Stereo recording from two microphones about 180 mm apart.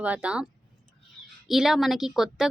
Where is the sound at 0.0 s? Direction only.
10° right (ahead or behind).